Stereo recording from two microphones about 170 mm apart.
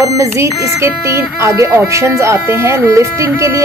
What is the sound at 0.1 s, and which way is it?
A woman's voice, 15° right (ahead or behind).